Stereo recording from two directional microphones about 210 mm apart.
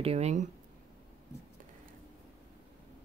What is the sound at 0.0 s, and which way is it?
Speech, 30° right (ahead or behind).